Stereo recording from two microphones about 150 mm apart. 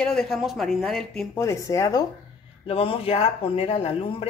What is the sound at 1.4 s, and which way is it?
Speech, 20° left (ahead or behind).